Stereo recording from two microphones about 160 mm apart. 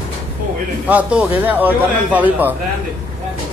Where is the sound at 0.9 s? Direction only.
10° right (ahead or behind).